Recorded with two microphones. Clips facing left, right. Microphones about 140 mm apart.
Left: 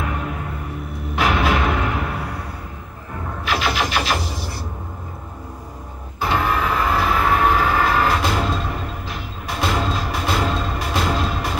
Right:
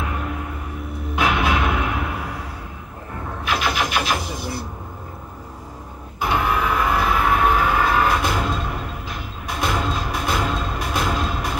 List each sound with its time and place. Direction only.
1.1 s music: 15° right (ahead or behind)
3.4 s vehicle: 15° right (ahead or behind)
6.2 s train: 15° right (ahead or behind)
9.6 s music: 15° right (ahead or behind)